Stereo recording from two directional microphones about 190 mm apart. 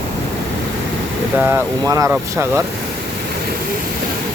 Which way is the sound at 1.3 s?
10° right (ahead or behind).